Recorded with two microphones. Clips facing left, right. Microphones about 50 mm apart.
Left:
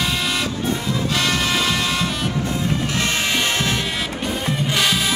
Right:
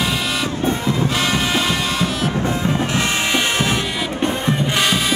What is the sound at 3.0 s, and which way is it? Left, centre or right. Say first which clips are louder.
Music: right 2 dB; centre.